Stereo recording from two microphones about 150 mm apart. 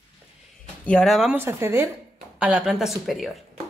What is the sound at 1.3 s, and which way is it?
Speech, 15° right (ahead or behind).